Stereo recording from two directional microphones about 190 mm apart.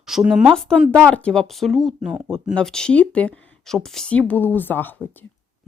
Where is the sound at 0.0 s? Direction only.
Centre (ahead or behind).